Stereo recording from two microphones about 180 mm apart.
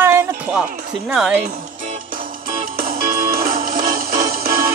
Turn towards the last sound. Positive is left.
turn(degrees=-55)  # may be behind; listen again after turning